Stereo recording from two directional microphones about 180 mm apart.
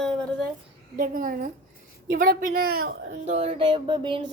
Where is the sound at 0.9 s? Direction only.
50° right (ahead or behind).